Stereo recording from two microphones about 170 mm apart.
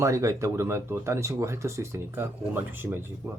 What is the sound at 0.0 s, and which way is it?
Speech, 20° right (ahead or behind).